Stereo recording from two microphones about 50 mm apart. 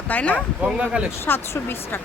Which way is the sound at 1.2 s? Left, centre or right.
Left.